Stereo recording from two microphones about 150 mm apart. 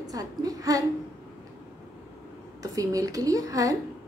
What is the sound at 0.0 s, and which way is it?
Speech, 25° right (ahead or behind).